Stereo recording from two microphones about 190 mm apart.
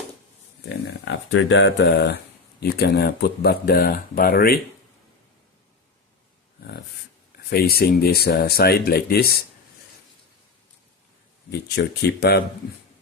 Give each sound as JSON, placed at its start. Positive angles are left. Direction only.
{"t": 0.9, "sound": "speech", "side_deg": 75}
{"t": 7.5, "sound": "speech", "side_deg": 55}
{"t": 11.5, "sound": "speech", "side_deg": 60}